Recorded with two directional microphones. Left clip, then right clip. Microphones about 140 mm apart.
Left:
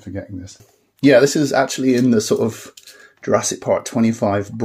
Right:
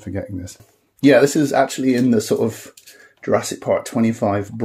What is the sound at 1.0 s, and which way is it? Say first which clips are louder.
Speech: left 1 dB; 10° left (ahead or behind).